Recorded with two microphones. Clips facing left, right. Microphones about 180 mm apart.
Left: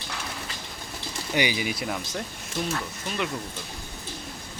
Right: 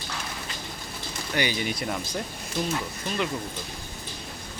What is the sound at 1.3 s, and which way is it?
Speech, 10° left (ahead or behind).